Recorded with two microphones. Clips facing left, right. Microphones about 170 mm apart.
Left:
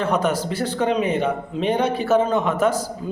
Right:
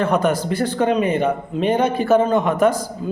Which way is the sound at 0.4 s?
55° right (ahead or behind).